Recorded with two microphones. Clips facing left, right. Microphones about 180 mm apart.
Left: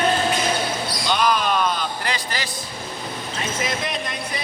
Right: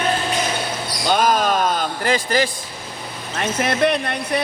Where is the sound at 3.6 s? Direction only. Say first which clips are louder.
Right 11 dB; 65° right (ahead or behind).